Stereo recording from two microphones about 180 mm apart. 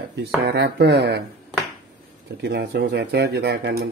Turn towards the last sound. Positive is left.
turn(degrees=-65)  # may be behind; listen again after turning